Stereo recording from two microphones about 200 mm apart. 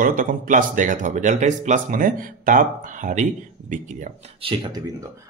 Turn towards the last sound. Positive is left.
turn(degrees=-25)  # may be behind; listen again after turning